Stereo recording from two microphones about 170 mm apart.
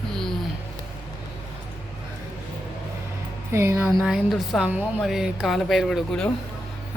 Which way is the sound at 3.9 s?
Centre (ahead or behind).